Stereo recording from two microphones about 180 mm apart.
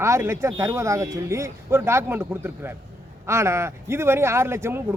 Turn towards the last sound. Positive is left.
turn(degrees=-15)  # may be behind; listen again after turning